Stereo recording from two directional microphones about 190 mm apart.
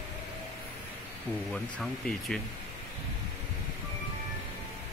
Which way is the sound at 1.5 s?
Centre (ahead or behind).